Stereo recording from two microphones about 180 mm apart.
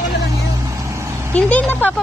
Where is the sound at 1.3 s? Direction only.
10° left (ahead or behind).